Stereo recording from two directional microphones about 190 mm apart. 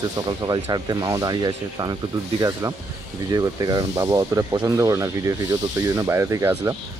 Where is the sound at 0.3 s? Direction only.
20° right (ahead or behind).